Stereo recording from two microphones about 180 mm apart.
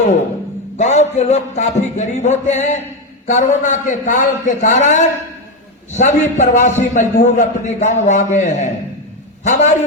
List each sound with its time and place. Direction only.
0.8 s a man's voice: 40° left (ahead or behind)